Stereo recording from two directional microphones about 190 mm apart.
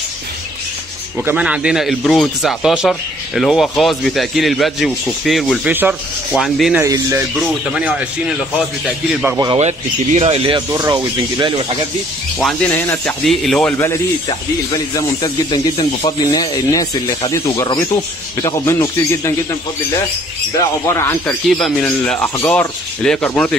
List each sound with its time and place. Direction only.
1.2 s speech: 5° right (ahead or behind)
6.8 s speech: 15° right (ahead or behind)
9.6 s speech: 35° right (ahead or behind)
10.7 s speech: 20° right (ahead or behind)
12.4 s speech: 5° left (ahead or behind)
15.0 s speech: 20° left (ahead or behind)
20.5 s speech: 15° left (ahead or behind)
21.5 s speech: centre (ahead or behind)